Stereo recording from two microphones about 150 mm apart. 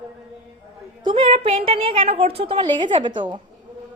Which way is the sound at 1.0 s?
35° right (ahead or behind).